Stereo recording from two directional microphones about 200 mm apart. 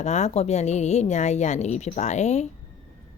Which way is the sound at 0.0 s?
35° left (ahead or behind).